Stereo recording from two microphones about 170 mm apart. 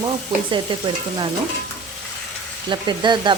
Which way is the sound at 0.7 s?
30° right (ahead or behind).